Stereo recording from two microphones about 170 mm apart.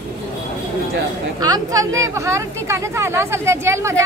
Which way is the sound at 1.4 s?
20° right (ahead or behind).